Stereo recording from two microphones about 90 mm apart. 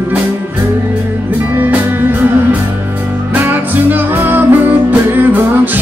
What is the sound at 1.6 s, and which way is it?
Music, 20° right (ahead or behind).